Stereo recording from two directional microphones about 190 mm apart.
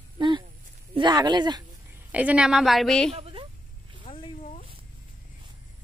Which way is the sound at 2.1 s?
5° right (ahead or behind).